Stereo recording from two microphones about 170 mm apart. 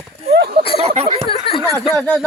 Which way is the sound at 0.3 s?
75° right (ahead or behind).